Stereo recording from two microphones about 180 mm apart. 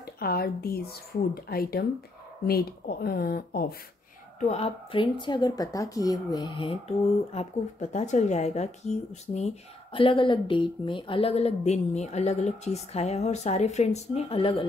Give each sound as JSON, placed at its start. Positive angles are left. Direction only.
{"t": 0.0, "sound": "speech", "side_deg": 60}
{"t": 4.5, "sound": "speech", "side_deg": 35}